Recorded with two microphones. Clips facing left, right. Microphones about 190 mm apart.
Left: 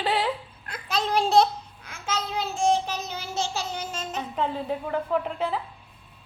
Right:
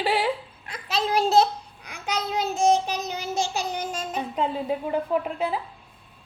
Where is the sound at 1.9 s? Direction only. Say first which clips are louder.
Right 2 dB; 15° right (ahead or behind).